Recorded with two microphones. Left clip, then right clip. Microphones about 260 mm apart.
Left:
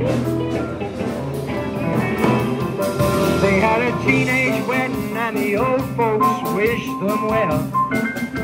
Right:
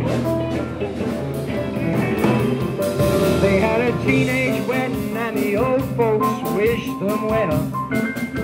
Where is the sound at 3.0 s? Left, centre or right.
Left.